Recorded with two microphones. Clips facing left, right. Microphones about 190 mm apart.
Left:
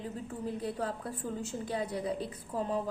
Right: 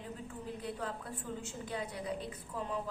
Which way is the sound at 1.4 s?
35° left (ahead or behind).